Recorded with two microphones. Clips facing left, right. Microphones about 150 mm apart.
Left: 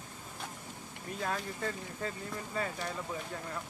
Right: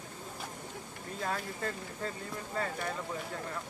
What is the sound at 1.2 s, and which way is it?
Speech, 5° left (ahead or behind).